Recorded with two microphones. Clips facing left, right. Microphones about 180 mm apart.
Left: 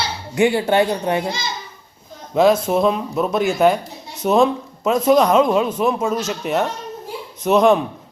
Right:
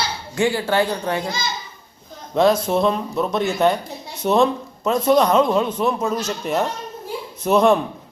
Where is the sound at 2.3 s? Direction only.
5° left (ahead or behind).